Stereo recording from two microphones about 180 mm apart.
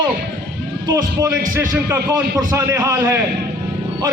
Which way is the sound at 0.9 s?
20° right (ahead or behind).